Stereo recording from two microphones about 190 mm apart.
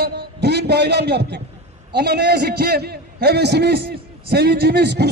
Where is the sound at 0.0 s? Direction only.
60° right (ahead or behind).